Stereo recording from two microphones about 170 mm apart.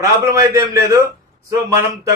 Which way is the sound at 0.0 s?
20° right (ahead or behind).